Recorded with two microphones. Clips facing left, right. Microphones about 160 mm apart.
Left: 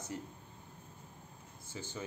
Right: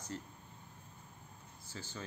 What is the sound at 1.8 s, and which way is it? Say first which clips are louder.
Speech: left 3 dB; 15° left (ahead or behind).